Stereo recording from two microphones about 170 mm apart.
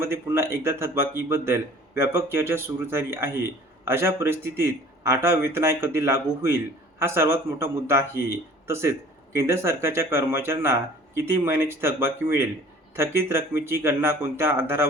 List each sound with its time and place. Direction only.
0.0 s a man's voice: 15° right (ahead or behind)